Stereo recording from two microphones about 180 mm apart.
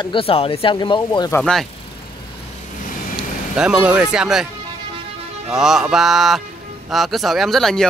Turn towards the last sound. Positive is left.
turn(degrees=0)  # may be behind; listen again after turning